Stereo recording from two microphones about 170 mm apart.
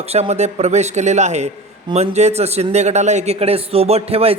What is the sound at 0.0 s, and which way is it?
A man's voice, 40° right (ahead or behind).